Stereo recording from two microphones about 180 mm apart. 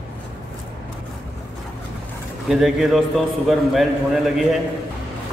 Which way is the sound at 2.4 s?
Centre (ahead or behind).